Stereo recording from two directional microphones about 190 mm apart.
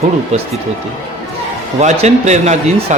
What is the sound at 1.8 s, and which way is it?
A man's voice, 35° right (ahead or behind).